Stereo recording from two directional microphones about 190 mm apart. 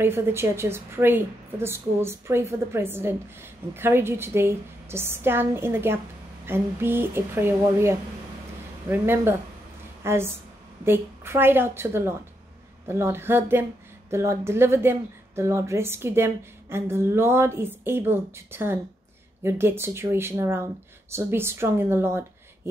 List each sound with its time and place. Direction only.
0.0 s a woman's voice: 10° right (ahead or behind)